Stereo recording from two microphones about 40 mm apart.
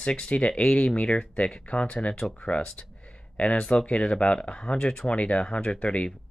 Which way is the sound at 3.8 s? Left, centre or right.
Left.